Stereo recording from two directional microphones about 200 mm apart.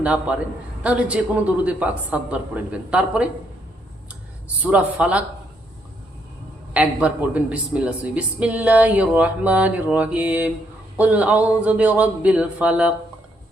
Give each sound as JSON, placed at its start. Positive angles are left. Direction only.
{"t": 0.0, "sound": "a woman's voice", "side_deg": -5}
{"t": 4.6, "sound": "speech", "side_deg": -5}
{"t": 6.7, "sound": "speech", "side_deg": -5}